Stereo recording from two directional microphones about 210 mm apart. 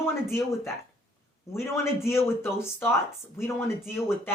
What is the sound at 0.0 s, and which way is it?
Speech, 10° left (ahead or behind).